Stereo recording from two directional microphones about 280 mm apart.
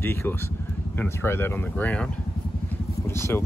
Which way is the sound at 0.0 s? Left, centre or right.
Centre.